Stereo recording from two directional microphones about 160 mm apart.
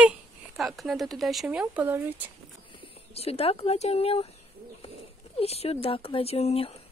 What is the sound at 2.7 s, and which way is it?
Speech, 35° left (ahead or behind).